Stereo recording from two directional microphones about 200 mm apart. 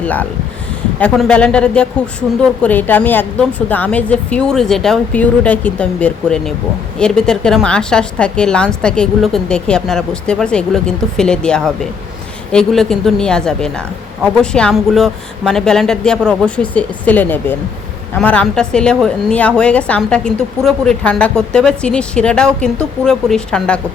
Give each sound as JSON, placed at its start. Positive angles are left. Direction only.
{"t": 0.0, "sound": "a woman's voice", "side_deg": 10}